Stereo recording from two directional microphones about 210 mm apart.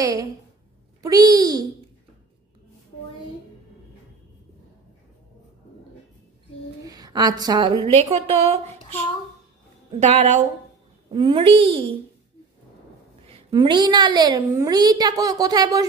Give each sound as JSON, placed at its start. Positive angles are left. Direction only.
{"t": 0.0, "sound": "a child's voice", "side_deg": -15}
{"t": 6.8, "sound": "a woman's voice", "side_deg": -15}
{"t": 9.9, "sound": "a woman's voice", "side_deg": -30}
{"t": 13.3, "sound": "a woman's voice", "side_deg": -20}